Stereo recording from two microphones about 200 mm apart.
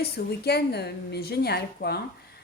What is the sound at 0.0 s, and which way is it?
A woman's voice, 55° left (ahead or behind).